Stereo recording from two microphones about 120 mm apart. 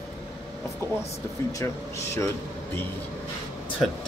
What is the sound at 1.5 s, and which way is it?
Speech, 25° left (ahead or behind).